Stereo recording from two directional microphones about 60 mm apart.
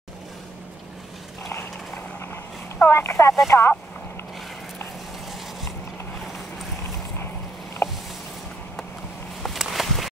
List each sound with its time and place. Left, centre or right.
2.9 s speech: left
7.8 s a sound: left
9.4 s walk: centre